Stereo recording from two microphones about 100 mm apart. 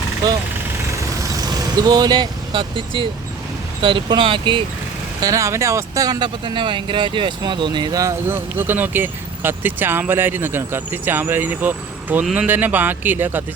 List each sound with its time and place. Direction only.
1.2 s speech: 35° right (ahead or behind); by 4.6 s 55° right (ahead or behind)
5.2 s speech: 30° right (ahead or behind)
8.3 s speech: 20° right (ahead or behind)